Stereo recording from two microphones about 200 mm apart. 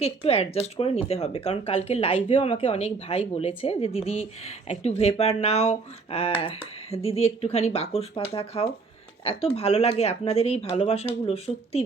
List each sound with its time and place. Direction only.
0.0 s speech: 30° left (ahead or behind)